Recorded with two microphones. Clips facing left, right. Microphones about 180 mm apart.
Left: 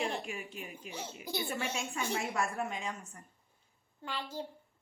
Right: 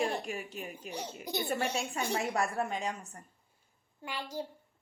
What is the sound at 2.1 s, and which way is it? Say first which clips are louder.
A woman's voice: right 4 dB; 35° right (ahead or behind).